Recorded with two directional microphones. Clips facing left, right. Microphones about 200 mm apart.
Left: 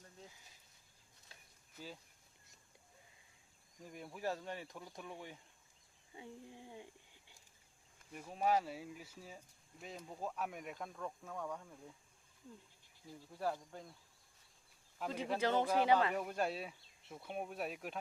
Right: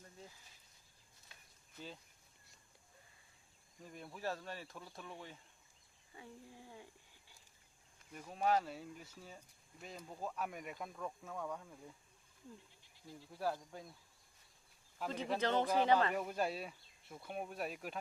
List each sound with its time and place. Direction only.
1.3 s a sound: 35° left (ahead or behind)
3.8 s speech: 10° left (ahead or behind)
8.1 s speech: 5° left (ahead or behind)
13.3 s speech: 5° right (ahead or behind)
14.9 s speech: 5° left (ahead or behind)